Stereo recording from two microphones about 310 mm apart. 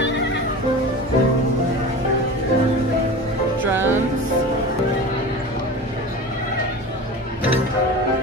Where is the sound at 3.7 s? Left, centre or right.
Centre.